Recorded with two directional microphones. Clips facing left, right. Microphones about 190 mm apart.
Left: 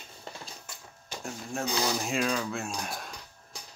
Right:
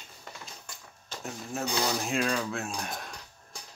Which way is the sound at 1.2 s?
Centre (ahead or behind).